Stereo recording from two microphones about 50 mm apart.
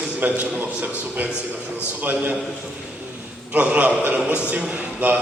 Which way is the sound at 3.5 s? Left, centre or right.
Right.